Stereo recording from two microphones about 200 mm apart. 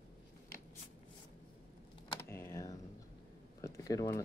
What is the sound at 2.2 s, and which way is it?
Typing, 10° left (ahead or behind).